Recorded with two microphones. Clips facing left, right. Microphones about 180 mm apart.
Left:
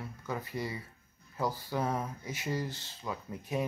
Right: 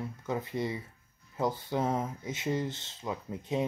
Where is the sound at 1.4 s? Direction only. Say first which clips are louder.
Right 3 dB; 20° right (ahead or behind).